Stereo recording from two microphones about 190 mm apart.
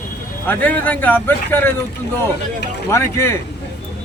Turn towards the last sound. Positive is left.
turn(degrees=15)  # may be behind; listen again after turning